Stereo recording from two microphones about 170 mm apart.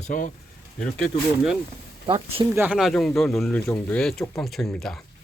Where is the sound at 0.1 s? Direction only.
50° left (ahead or behind).